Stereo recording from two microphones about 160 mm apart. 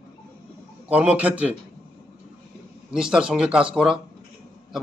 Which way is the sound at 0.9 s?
10° right (ahead or behind).